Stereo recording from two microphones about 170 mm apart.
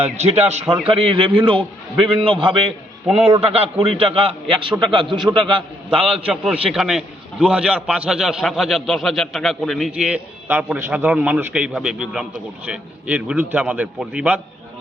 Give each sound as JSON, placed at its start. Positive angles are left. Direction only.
{"t": 0.0, "sound": "a man's voice", "side_deg": -40}
{"t": 6.2, "sound": "a man's voice", "side_deg": -5}